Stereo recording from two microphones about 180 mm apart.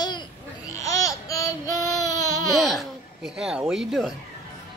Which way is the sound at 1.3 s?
20° left (ahead or behind).